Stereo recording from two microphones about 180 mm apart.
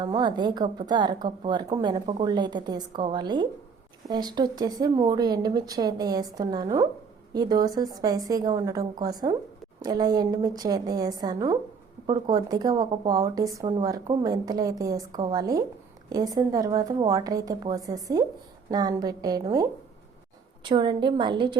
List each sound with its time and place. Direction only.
0.0 s speech: 25° right (ahead or behind)
20.7 s speech: 25° right (ahead or behind)